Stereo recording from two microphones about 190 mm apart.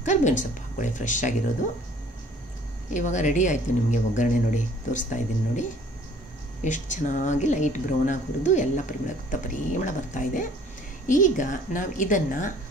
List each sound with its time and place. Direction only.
0.0 s a sound: 40° left (ahead or behind)
0.4 s speech: 40° left (ahead or behind)
2.9 s a woman's voice: 40° left (ahead or behind)